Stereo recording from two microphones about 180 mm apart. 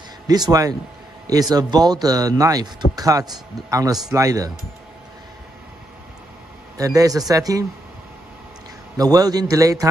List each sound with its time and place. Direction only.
0.3 s speech: 20° right (ahead or behind)
6.8 s speech: 20° right (ahead or behind)
8.9 s speech: 20° right (ahead or behind)